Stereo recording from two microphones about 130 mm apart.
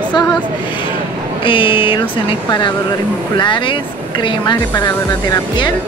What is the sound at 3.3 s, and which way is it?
Speech, 40° left (ahead or behind).